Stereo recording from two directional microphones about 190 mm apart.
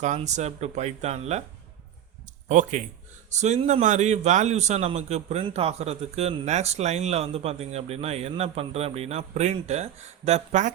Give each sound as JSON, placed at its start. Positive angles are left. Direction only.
{"t": 0.0, "sound": "a man's voice", "side_deg": -40}
{"t": 2.5, "sound": "a man's voice", "side_deg": -40}